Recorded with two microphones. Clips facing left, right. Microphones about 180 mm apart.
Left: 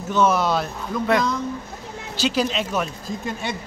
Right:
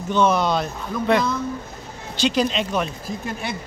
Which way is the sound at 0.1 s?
5° left (ahead or behind).